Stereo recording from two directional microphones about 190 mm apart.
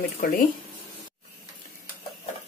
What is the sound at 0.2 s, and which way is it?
Speech, 45° left (ahead or behind).